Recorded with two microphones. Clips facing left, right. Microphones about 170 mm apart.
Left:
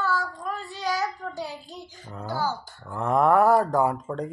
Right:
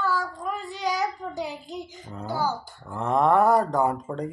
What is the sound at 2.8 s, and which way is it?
Speech, centre (ahead or behind).